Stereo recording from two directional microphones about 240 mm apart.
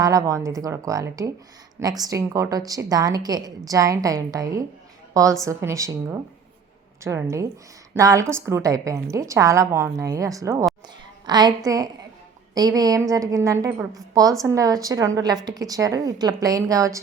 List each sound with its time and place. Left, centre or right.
0.0 s a woman's voice: centre